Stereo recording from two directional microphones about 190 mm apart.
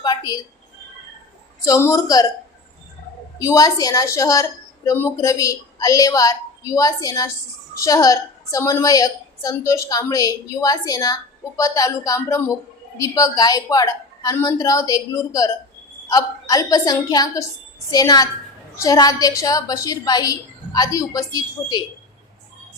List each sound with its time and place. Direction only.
0.0 s a sound: 20° left (ahead or behind)
1.6 s a woman's voice: 15° left (ahead or behind)
3.3 s a woman's voice: 15° left (ahead or behind)